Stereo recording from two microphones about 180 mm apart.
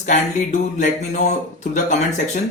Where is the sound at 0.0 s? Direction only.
45° left (ahead or behind).